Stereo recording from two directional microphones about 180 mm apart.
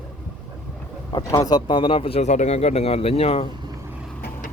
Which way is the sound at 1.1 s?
20° left (ahead or behind).